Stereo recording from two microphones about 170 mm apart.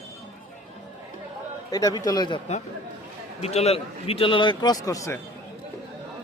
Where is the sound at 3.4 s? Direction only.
40° left (ahead or behind); by 5.1 s 20° left (ahead or behind).